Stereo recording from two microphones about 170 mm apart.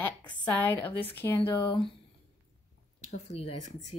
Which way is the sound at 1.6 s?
25° left (ahead or behind).